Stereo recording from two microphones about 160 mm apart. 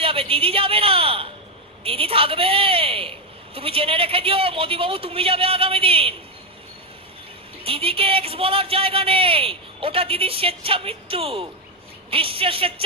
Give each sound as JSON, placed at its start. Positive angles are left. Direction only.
{"t": 0.0, "sound": "a sound", "side_deg": -35}
{"t": 1.8, "sound": "a man's voice", "side_deg": -35}
{"t": 7.6, "sound": "a man's voice", "side_deg": -35}